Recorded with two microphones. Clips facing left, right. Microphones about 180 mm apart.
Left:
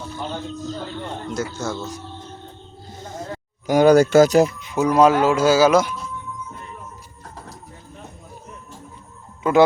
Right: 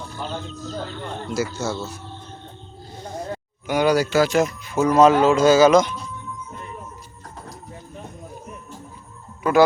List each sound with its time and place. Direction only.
1.3 s speech: 5° right (ahead or behind)
3.7 s speech: 45° left (ahead or behind)
4.6 s speech: 15° left (ahead or behind)
9.4 s speech: 20° left (ahead or behind)